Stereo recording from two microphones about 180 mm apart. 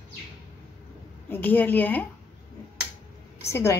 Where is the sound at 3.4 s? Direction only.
15° left (ahead or behind).